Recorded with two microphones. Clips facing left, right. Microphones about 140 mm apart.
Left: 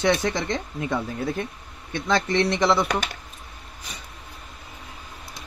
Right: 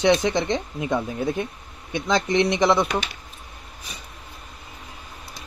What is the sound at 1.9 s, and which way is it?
Speech, 15° right (ahead or behind).